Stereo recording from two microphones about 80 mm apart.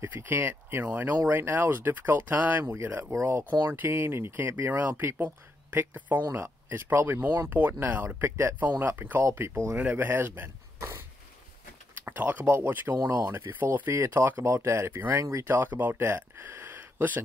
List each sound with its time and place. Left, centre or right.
0.0 s speech: right
12.0 s speech: centre